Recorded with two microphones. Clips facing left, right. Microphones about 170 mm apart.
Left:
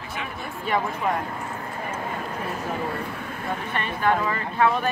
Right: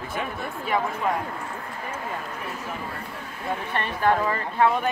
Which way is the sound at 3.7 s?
35° right (ahead or behind).